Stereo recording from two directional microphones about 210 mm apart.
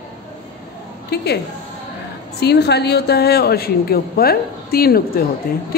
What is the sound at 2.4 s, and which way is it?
A man's voice, 50° left (ahead or behind).